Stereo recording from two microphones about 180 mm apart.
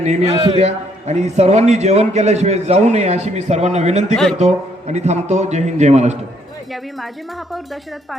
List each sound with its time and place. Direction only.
0.0 s a man's voice: 40° right (ahead or behind)
7.0 s speech: centre (ahead or behind)